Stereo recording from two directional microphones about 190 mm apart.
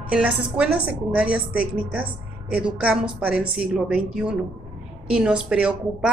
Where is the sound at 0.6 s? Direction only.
5° right (ahead or behind).